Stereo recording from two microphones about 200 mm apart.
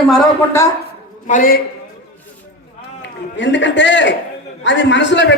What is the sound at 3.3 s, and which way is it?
A man's voice, 65° left (ahead or behind).